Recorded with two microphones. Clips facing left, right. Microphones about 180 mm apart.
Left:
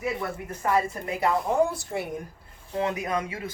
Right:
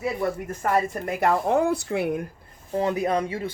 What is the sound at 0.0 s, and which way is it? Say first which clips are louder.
Speech: right 4 dB; 45° right (ahead or behind).